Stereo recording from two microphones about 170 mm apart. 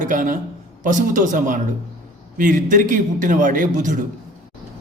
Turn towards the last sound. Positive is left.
turn(degrees=-50)  # may be behind; listen again after turning